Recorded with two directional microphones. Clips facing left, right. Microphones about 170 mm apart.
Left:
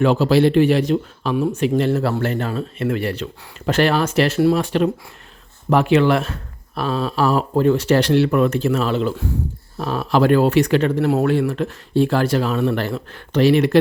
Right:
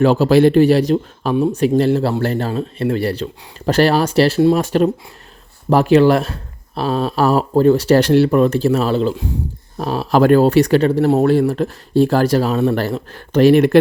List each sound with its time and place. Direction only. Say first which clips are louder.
0.0 s speech: right 3 dB; 40° right (ahead or behind)
4.5 s speech: right 3 dB; 40° right (ahead or behind)